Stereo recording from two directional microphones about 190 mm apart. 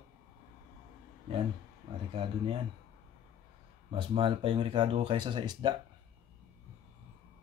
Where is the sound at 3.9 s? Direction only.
25° right (ahead or behind).